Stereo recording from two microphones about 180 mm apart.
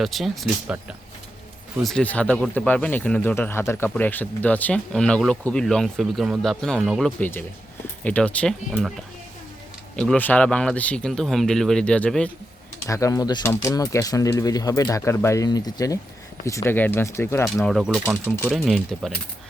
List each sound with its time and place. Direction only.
0.0 s speech: centre (ahead or behind)
1.8 s speech: 5° left (ahead or behind)
7.2 s speech: 10° left (ahead or behind)
12.9 s speech: 20° left (ahead or behind)
17.7 s speech: centre (ahead or behind)
18.0 s speech: 10° right (ahead or behind)